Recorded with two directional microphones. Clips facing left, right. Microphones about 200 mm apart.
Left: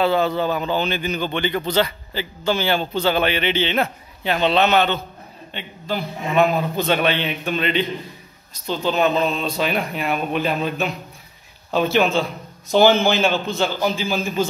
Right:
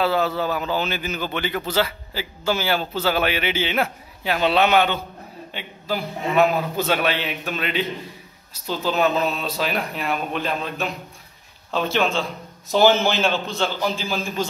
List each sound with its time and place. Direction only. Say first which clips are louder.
0.0 s speech: left 2 dB; 5° right (ahead or behind)